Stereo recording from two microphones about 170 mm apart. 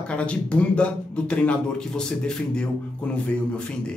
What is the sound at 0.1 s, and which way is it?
A man's voice, 5° left (ahead or behind).